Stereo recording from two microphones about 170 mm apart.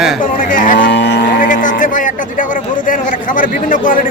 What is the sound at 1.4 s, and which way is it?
A man's voice, 50° left (ahead or behind).